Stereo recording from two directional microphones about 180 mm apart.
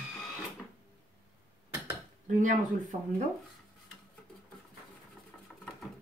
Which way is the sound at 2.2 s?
45° right (ahead or behind).